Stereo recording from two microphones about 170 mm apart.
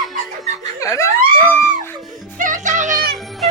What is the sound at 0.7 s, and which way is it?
Laughter, 20° left (ahead or behind).